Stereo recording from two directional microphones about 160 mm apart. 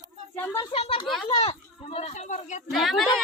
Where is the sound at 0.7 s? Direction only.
35° left (ahead or behind).